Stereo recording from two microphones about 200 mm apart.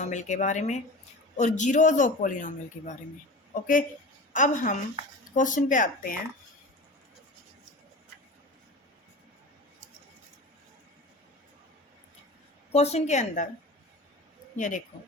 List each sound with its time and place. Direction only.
0.0 s a man's voice: 35° left (ahead or behind)
12.7 s a man's voice: 30° left (ahead or behind)
14.5 s a woman's voice: 40° left (ahead or behind)